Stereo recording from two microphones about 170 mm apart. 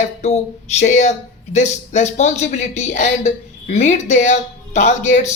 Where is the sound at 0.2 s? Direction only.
40° left (ahead or behind).